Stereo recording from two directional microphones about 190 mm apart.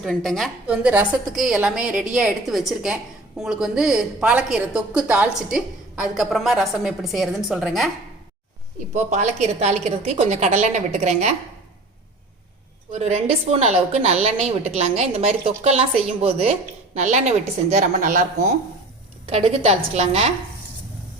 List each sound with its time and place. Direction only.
0.0 s a woman's voice: centre (ahead or behind)
8.9 s a woman's voice: 40° right (ahead or behind)
12.9 s a woman's voice: 35° right (ahead or behind)
19.3 s a woman's voice: 35° right (ahead or behind)